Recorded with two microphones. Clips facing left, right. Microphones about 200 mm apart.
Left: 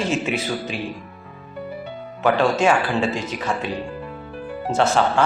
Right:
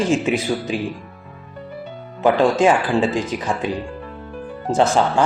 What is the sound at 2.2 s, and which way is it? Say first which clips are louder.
Speech: right 3 dB; 15° right (ahead or behind).